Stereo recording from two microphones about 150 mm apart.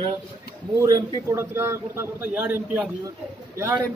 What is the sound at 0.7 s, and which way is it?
A man's voice, 20° right (ahead or behind).